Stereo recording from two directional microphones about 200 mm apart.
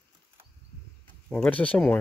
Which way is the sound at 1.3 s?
5° left (ahead or behind).